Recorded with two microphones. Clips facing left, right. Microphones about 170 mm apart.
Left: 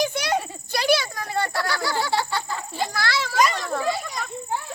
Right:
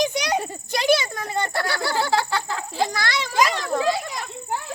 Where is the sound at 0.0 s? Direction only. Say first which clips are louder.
Right 1 dB; 20° right (ahead or behind).